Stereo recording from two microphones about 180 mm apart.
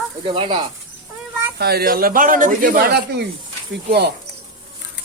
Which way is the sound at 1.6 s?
60° right (ahead or behind).